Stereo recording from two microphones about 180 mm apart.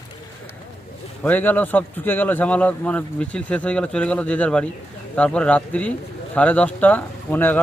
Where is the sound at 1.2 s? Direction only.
10° left (ahead or behind).